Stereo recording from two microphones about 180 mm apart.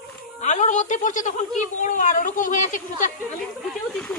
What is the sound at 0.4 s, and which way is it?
A woman's voice, 40° left (ahead or behind).